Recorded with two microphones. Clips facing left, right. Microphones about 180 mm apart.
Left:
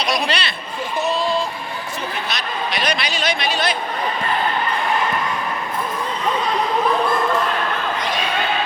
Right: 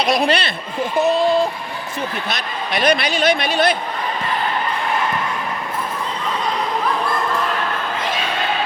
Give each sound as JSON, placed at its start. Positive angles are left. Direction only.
{"t": 0.0, "sound": "speech", "side_deg": -55}
{"t": 2.3, "sound": "speech", "side_deg": -55}